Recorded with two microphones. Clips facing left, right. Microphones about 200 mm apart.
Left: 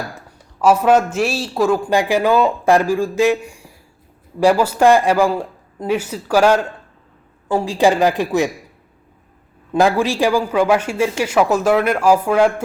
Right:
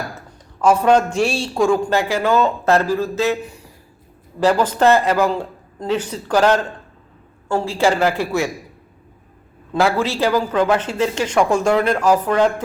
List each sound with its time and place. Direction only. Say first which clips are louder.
0.6 s a man's voice: left 1 dB; 5° left (ahead or behind)
1.9 s a man's voice: left 2 dB; 15° left (ahead or behind)
9.7 s a man's voice: left 3 dB; 15° left (ahead or behind)